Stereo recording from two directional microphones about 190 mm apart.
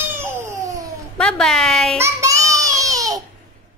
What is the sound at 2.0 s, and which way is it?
Child singing, 15° right (ahead or behind).